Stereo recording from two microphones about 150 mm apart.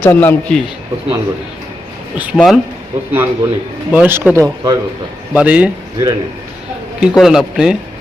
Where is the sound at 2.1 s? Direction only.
10° right (ahead or behind).